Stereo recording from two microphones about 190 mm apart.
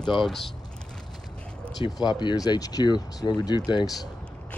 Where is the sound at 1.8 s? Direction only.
20° left (ahead or behind).